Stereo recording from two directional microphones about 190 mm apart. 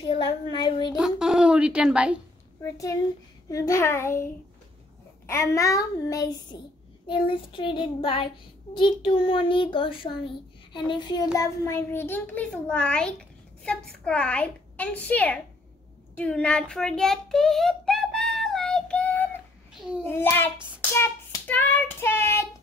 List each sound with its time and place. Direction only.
0.1 s a sound: 25° left (ahead or behind)
0.9 s speech: 5° right (ahead or behind)
2.6 s a child's voice: 15° left (ahead or behind)
16.2 s child singing: 5° left (ahead or behind)
20.1 s a child's voice: 10° left (ahead or behind)
20.9 s child singing: 15° left (ahead or behind)